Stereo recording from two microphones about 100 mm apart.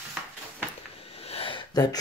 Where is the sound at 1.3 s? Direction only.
75° left (ahead or behind).